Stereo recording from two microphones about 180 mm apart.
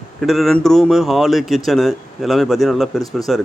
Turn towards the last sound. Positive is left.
turn(degrees=0)  # may be behind; listen again after turning